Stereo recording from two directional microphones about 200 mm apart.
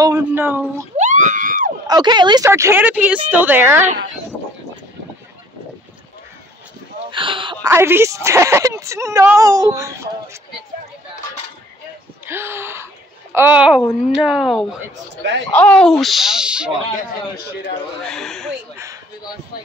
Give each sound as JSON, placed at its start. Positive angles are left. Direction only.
{"t": 0.0, "sound": "speech", "side_deg": -15}
{"t": 0.9, "sound": "speech", "side_deg": -35}
{"t": 1.9, "sound": "speech", "side_deg": -20}
{"t": 7.1, "sound": "a sound", "side_deg": -25}
{"t": 7.7, "sound": "speech", "side_deg": -10}
{"t": 12.3, "sound": "speech", "side_deg": -10}
{"t": 18.1, "sound": "speech", "side_deg": 0}